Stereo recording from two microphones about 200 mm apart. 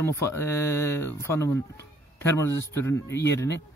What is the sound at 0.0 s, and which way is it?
Speech, 15° left (ahead or behind).